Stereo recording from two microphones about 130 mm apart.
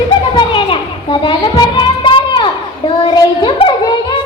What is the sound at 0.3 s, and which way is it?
Music, 40° left (ahead or behind).